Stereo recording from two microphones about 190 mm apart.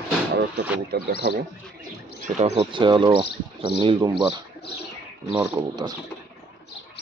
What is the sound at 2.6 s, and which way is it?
Speech, 25° right (ahead or behind).